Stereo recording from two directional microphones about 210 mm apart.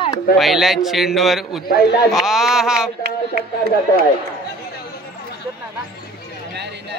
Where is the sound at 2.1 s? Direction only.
Centre (ahead or behind).